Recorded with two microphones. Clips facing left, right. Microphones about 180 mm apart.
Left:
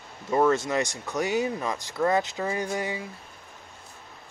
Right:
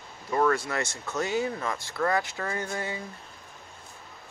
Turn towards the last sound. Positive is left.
turn(degrees=15)  # may be behind; listen again after turning